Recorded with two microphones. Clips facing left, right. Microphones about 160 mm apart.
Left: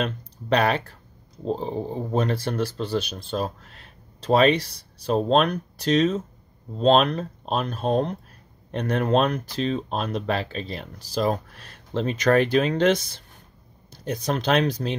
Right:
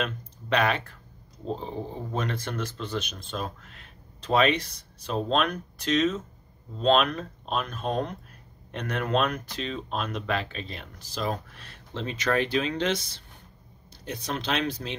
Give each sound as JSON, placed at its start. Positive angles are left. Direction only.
{"t": 0.0, "sound": "speech", "side_deg": 35}